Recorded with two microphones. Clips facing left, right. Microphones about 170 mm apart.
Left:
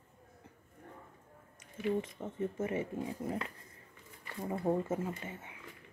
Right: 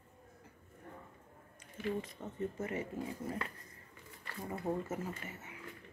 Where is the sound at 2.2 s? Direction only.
25° left (ahead or behind).